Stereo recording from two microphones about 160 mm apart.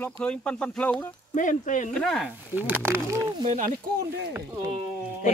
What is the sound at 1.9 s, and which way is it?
Speech, centre (ahead or behind).